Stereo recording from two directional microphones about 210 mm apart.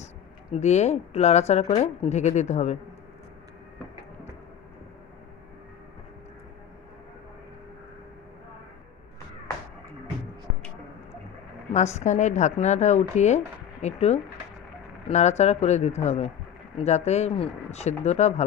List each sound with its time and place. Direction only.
0.5 s speech: 30° left (ahead or behind)
11.7 s speech: 35° left (ahead or behind)